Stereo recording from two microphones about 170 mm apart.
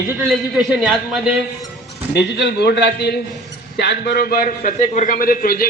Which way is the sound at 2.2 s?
75° left (ahead or behind).